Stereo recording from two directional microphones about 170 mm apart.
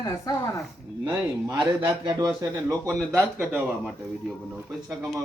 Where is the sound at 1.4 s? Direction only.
25° right (ahead or behind); by 5.3 s centre (ahead or behind).